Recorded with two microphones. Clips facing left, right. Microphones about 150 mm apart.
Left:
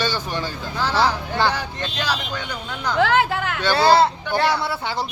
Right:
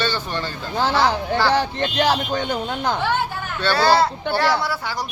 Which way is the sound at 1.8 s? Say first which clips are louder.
Right 6 dB; 50° right (ahead or behind).